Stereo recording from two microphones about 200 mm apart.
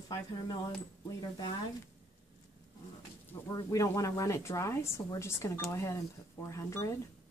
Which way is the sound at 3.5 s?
15° left (ahead or behind).